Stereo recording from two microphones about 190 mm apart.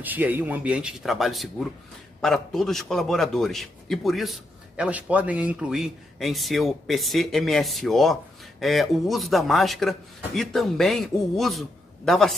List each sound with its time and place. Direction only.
0.0 s a man's voice: 10° right (ahead or behind)